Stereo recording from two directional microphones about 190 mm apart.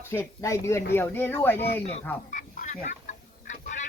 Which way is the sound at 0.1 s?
15° left (ahead or behind).